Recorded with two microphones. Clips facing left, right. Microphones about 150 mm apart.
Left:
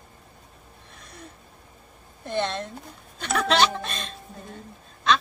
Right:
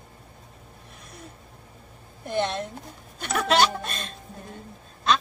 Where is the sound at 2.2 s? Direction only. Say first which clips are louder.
Right 1 dB; 10° right (ahead or behind).